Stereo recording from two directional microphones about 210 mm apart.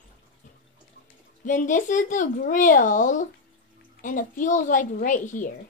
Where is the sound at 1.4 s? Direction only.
40° left (ahead or behind).